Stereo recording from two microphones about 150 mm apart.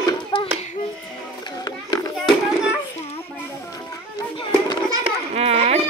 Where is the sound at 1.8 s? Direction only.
30° left (ahead or behind).